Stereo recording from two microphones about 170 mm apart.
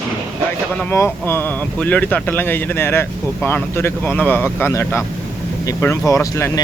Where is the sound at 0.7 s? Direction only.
10° left (ahead or behind).